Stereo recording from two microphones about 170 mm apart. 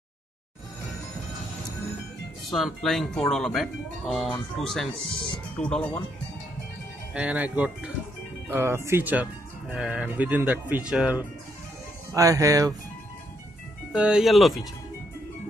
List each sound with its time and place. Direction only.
2.5 s speech: centre (ahead or behind)
7.2 s speech: 10° right (ahead or behind)
12.1 s speech: 20° right (ahead or behind)
13.9 s speech: 5° right (ahead or behind)